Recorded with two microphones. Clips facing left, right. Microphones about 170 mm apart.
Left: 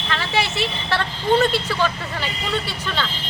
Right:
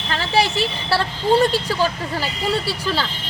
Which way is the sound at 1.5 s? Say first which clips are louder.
Right 1 dB; 35° right (ahead or behind).